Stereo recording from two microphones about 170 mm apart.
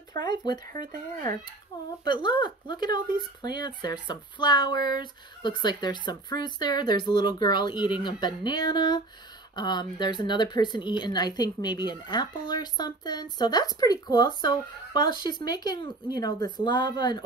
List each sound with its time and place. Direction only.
0.2 s speech: 25° left (ahead or behind)
2.0 s speech: 25° left (ahead or behind)